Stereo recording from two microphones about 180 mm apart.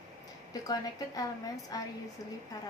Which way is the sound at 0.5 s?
20° left (ahead or behind).